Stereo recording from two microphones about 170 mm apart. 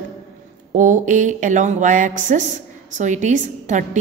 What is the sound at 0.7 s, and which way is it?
A woman's voice, 50° right (ahead or behind).